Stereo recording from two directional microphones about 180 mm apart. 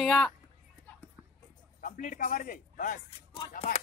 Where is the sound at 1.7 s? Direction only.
45° left (ahead or behind).